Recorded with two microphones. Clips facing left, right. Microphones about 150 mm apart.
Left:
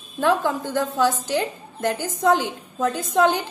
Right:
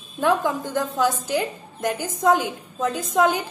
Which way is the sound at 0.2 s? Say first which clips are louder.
Even; 15° right (ahead or behind).